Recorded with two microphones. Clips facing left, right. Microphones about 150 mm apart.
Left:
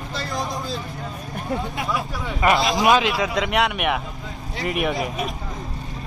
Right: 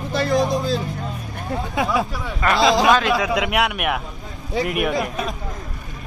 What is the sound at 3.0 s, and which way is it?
Speech, centre (ahead or behind).